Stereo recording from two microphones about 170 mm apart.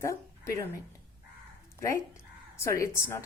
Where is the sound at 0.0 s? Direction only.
15° left (ahead or behind).